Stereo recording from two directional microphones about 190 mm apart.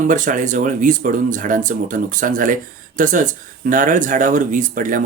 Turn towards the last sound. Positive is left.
turn(degrees=-45)  # may be behind; listen again after turning